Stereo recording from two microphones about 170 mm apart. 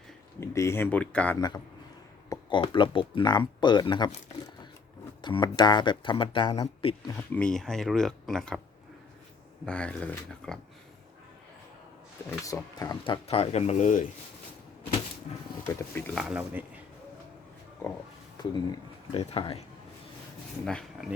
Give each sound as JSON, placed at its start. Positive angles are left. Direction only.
{"t": 0.3, "sound": "speech", "side_deg": 15}
{"t": 1.4, "sound": "speech", "side_deg": 25}
{"t": 5.2, "sound": "speech", "side_deg": 25}
{"t": 7.2, "sound": "speech", "side_deg": 5}
{"t": 9.6, "sound": "speech", "side_deg": 5}
{"t": 12.5, "sound": "speech", "side_deg": 20}
{"t": 13.2, "sound": "speech", "side_deg": 35}
{"t": 15.6, "sound": "speech", "side_deg": 15}
{"t": 16.1, "sound": "speech", "side_deg": -10}
{"t": 18.3, "sound": "speech", "side_deg": 25}
{"t": 20.7, "sound": "speech", "side_deg": 5}